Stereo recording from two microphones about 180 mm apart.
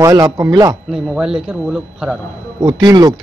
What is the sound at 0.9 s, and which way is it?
A man's voice, 5° right (ahead or behind).